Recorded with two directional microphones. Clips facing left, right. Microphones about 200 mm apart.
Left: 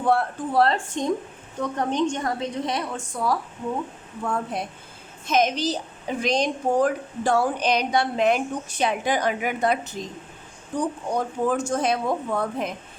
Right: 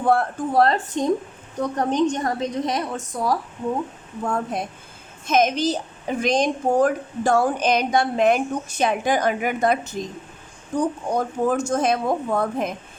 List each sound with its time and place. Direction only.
0.0 s a woman's voice: 50° right (ahead or behind)